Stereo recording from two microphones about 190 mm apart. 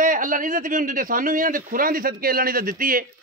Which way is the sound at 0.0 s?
45° right (ahead or behind).